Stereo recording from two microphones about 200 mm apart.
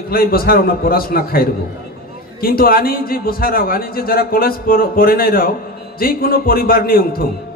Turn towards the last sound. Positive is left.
turn(degrees=45)  # may be behind; listen again after turning